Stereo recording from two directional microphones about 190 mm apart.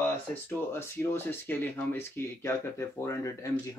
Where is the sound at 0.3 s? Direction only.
10° left (ahead or behind).